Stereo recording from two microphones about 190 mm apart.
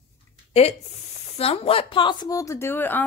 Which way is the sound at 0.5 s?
35° left (ahead or behind).